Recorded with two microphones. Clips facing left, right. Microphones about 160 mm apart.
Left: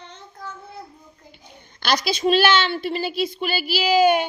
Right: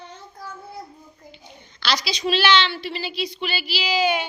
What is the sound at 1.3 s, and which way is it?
A child's voice, 50° left (ahead or behind).